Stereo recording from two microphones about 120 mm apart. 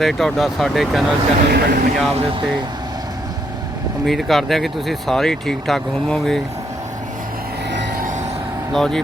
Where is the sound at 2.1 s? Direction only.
50° right (ahead or behind).